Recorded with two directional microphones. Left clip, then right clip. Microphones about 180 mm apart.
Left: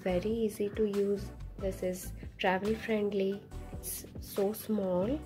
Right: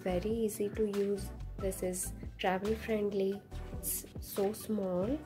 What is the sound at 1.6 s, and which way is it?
Speech, 15° right (ahead or behind).